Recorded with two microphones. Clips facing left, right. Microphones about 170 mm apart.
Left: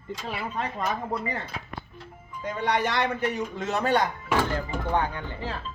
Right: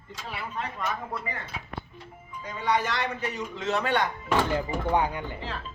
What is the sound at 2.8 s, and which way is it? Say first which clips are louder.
A man's voice: left 4 dB; 60° left (ahead or behind).